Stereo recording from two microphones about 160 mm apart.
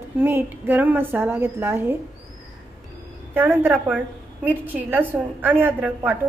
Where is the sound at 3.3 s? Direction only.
10° right (ahead or behind).